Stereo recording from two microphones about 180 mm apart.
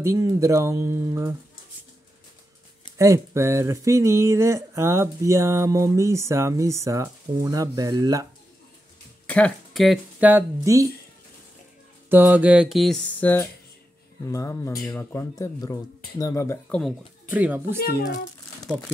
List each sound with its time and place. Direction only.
0.0 s speech: 15° right (ahead or behind)
3.0 s speech: 15° right (ahead or behind)
9.3 s speech: 5° left (ahead or behind)
10.3 s speech: 15° right (ahead or behind)
12.1 s mantra: 10° right (ahead or behind); by 13.5 s 10° left (ahead or behind)
14.2 s speech: 15° left (ahead or behind)
16.6 s mantra: 5° left (ahead or behind)
17.3 s speech: 10° right (ahead or behind)